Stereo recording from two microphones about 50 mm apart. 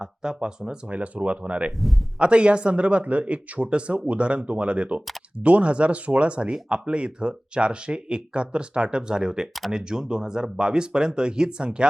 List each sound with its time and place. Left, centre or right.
0.0 s speech: centre